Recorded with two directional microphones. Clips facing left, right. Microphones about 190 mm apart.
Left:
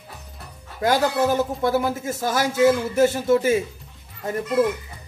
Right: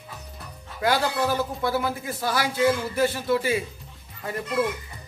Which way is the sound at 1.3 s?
45° left (ahead or behind).